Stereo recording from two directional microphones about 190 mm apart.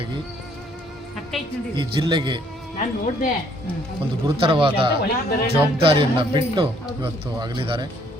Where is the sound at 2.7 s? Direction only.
45° left (ahead or behind).